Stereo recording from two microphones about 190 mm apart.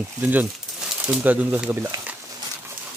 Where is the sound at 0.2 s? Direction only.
10° right (ahead or behind).